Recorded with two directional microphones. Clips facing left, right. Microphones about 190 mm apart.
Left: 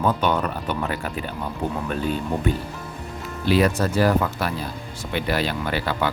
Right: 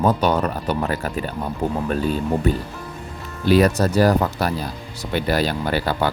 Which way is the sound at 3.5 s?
40° right (ahead or behind).